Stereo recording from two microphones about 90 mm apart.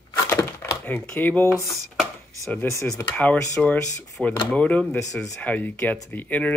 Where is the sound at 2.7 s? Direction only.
35° left (ahead or behind).